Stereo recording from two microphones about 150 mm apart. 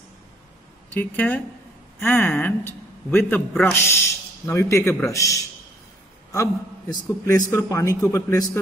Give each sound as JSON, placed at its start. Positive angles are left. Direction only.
{"t": 0.9, "sound": "a man's voice", "side_deg": 10}